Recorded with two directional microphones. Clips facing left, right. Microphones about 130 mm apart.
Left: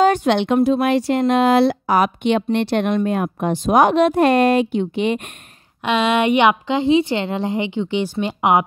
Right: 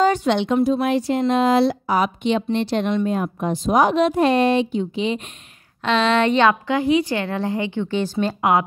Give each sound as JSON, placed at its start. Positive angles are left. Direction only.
{"t": 0.0, "sound": "speech", "side_deg": 55}
{"t": 5.9, "sound": "a woman's voice", "side_deg": 10}